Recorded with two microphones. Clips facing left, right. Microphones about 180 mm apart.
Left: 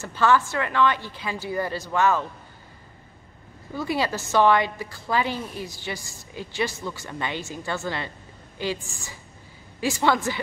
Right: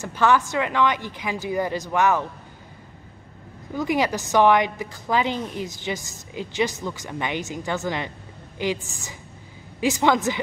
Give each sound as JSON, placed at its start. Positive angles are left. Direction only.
{"t": 0.0, "sound": "a woman's voice", "side_deg": -15}
{"t": 3.7, "sound": "a woman's voice", "side_deg": -15}